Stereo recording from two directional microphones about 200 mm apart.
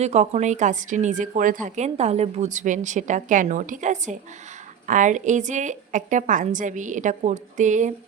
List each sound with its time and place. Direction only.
0.0 s speech: 35° right (ahead or behind)